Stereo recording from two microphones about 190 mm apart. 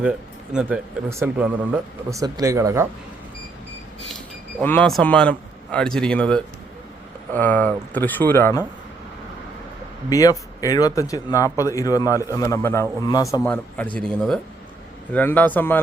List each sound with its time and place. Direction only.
0.5 s speech: 5° right (ahead or behind)
4.6 s a man's voice: 5° left (ahead or behind)
10.1 s speech: 20° left (ahead or behind)